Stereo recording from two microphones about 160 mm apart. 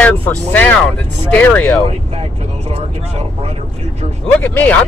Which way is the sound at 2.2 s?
35° right (ahead or behind).